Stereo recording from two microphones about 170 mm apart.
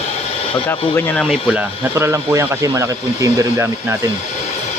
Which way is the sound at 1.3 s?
10° right (ahead or behind).